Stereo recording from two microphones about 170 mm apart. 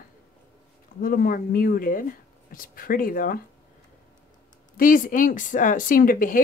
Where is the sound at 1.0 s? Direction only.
60° left (ahead or behind).